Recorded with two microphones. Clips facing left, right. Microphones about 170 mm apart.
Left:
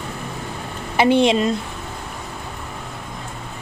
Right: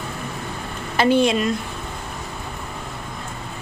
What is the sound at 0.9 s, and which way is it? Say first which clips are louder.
Speech: left 2 dB; 20° left (ahead or behind).